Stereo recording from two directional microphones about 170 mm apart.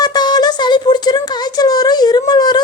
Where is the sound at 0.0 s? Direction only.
25° left (ahead or behind).